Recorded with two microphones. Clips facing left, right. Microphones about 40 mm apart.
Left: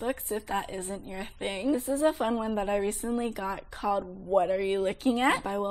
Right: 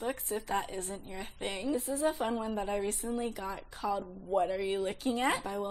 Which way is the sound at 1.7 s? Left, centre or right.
Left.